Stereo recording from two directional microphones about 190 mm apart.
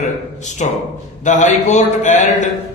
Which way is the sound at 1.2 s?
40° left (ahead or behind).